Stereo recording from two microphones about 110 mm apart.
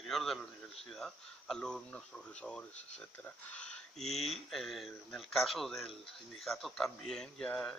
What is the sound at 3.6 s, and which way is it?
Speech, 5° left (ahead or behind).